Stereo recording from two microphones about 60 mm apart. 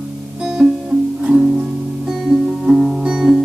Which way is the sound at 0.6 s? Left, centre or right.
Centre.